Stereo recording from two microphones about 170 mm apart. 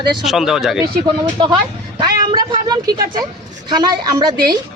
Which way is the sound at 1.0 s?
30° right (ahead or behind).